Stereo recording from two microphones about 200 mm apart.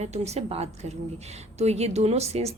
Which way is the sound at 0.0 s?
35° right (ahead or behind).